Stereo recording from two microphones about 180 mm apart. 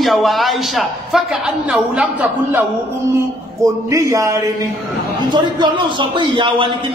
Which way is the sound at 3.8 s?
15° right (ahead or behind).